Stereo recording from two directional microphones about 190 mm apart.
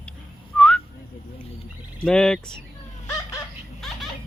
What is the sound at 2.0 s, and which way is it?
Speech, 5° left (ahead or behind).